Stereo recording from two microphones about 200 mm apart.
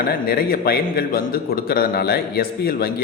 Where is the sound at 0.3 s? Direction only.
50° left (ahead or behind).